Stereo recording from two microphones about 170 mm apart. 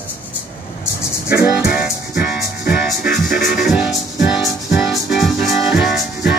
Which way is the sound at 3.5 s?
5° right (ahead or behind).